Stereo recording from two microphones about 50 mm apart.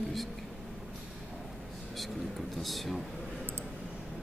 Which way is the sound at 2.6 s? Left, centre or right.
Centre.